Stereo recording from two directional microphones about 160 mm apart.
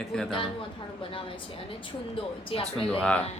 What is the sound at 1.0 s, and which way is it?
A woman's voice, 30° left (ahead or behind).